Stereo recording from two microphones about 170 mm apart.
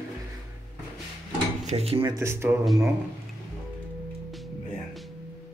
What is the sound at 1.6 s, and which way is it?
Speech, 35° right (ahead or behind).